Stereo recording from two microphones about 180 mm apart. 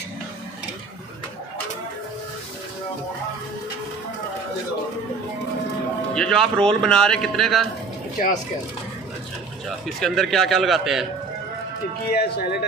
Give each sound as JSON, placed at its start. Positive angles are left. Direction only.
{"t": 6.1, "sound": "a man's voice", "side_deg": 5}
{"t": 9.9, "sound": "a man's voice", "side_deg": 0}
{"t": 12.1, "sound": "speech", "side_deg": 60}